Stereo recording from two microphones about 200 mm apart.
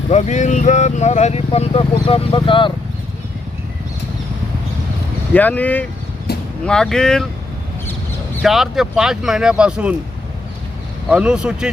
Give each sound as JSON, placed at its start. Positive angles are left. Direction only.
{"t": 0.1, "sound": "speech", "side_deg": 35}
{"t": 5.3, "sound": "speech", "side_deg": 10}
{"t": 6.3, "sound": "a sound", "side_deg": 55}
{"t": 6.7, "sound": "speech", "side_deg": 5}
{"t": 8.4, "sound": "speech", "side_deg": 0}
{"t": 11.1, "sound": "speech", "side_deg": -5}